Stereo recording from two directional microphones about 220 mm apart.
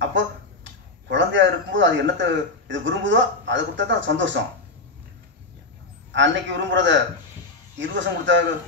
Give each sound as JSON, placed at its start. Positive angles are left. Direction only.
{"t": 0.0, "sound": "a man's voice", "side_deg": -55}
{"t": 6.1, "sound": "a man's voice", "side_deg": -55}